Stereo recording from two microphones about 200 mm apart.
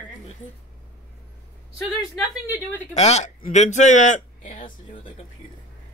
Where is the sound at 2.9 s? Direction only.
35° left (ahead or behind).